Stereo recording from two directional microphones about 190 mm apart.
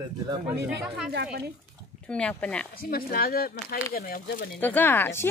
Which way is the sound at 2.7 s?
50° left (ahead or behind).